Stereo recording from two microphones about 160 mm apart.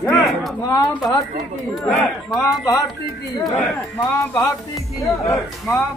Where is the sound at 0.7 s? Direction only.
20° left (ahead or behind).